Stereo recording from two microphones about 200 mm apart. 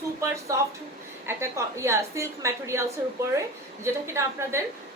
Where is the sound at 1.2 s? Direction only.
15° right (ahead or behind).